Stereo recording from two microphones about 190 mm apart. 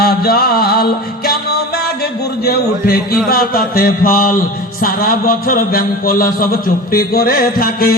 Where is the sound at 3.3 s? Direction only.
50° left (ahead or behind).